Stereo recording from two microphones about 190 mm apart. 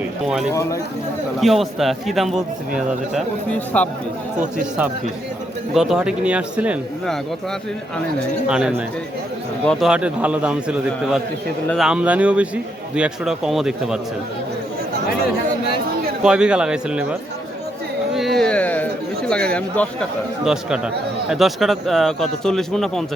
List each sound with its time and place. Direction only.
0.5 s speech: 15° left (ahead or behind)
1.4 s a man's voice: centre (ahead or behind)
5.7 s a man's voice: centre (ahead or behind)
8.4 s a man's voice: 5° right (ahead or behind)
16.2 s a man's voice: 5° right (ahead or behind)